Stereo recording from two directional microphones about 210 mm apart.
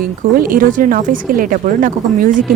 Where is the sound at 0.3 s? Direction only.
40° right (ahead or behind).